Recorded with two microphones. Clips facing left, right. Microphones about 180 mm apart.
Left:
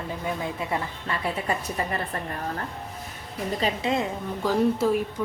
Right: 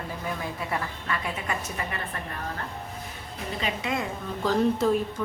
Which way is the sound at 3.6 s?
25° left (ahead or behind).